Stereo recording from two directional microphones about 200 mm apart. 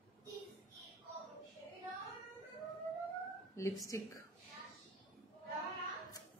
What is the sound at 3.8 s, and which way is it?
Speech, 15° left (ahead or behind).